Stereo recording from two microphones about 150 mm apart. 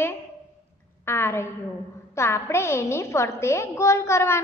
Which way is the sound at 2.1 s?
20° left (ahead or behind).